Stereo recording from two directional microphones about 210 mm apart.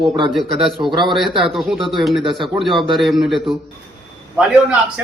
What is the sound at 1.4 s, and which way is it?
A man's voice, centre (ahead or behind).